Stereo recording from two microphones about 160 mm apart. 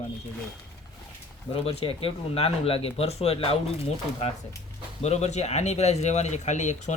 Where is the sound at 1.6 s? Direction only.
35° left (ahead or behind).